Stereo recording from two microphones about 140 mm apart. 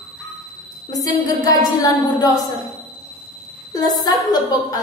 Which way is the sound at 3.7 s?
25° left (ahead or behind).